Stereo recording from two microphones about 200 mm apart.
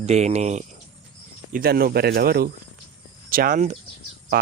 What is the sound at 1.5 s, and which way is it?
Speech, 45° right (ahead or behind).